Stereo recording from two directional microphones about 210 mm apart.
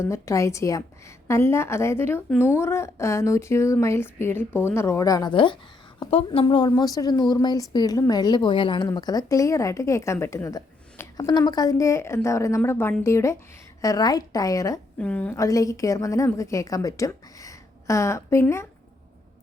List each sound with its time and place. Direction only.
0.0 s a woman's voice: 15° left (ahead or behind)